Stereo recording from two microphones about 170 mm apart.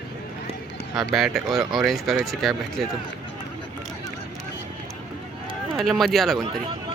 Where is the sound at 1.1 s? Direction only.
Centre (ahead or behind).